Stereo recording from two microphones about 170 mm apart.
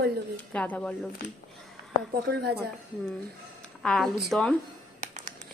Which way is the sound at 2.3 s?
75° right (ahead or behind).